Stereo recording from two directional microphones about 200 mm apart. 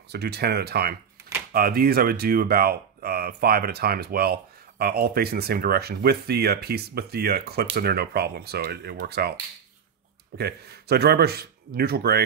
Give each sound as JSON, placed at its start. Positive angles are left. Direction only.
{"t": 0.1, "sound": "speech", "side_deg": -55}
{"t": 10.3, "sound": "speech", "side_deg": -55}